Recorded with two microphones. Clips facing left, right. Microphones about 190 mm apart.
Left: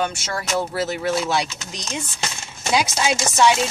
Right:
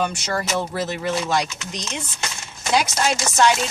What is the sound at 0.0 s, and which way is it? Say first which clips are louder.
Speech: right 1 dB; centre (ahead or behind).